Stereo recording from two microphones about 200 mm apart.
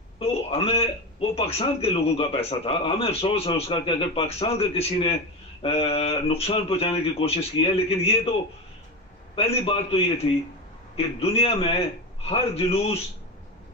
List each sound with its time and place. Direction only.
0.2 s a man's voice: 30° left (ahead or behind)
9.3 s a man's voice: 30° left (ahead or behind)